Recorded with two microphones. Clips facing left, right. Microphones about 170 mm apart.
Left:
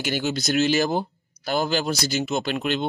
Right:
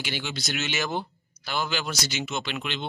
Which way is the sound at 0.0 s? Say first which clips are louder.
Left 8 dB; 40° left (ahead or behind).